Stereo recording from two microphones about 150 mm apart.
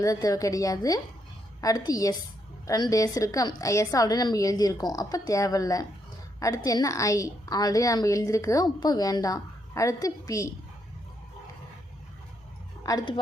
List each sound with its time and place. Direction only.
0.0 s a woman's voice: 25° left (ahead or behind)
12.8 s speech: 25° left (ahead or behind)